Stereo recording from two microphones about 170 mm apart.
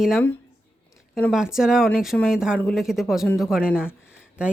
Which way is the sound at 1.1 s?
Centre (ahead or behind).